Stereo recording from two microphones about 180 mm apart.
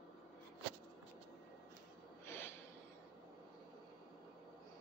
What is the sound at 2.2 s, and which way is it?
Snort, 10° left (ahead or behind).